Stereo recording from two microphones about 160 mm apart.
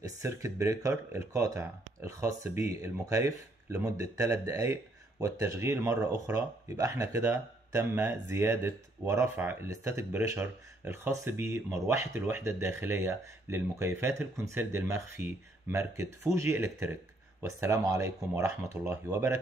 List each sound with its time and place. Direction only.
0.0 s speech: 20° right (ahead or behind)